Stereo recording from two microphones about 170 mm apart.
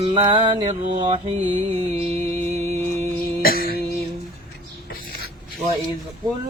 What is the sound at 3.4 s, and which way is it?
Cough, 60° left (ahead or behind).